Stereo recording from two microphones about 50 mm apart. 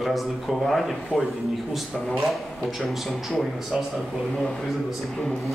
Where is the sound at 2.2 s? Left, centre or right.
Centre.